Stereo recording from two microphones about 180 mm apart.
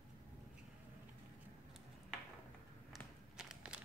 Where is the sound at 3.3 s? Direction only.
5° right (ahead or behind).